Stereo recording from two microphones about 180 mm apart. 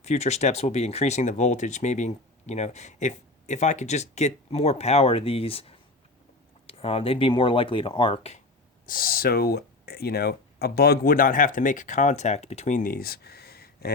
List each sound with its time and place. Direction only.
0.0 s speech: 40° left (ahead or behind)
8.9 s speech: 55° left (ahead or behind)